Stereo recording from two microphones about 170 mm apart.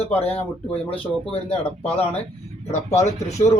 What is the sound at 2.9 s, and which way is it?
Speech, 15° left (ahead or behind).